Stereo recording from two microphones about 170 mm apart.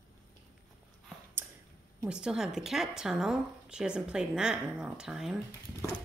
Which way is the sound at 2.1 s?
5° right (ahead or behind).